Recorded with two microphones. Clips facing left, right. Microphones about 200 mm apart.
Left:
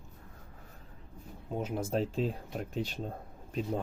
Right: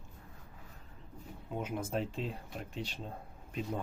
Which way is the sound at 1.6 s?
35° left (ahead or behind).